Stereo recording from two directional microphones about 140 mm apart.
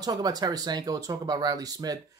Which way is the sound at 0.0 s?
30° right (ahead or behind).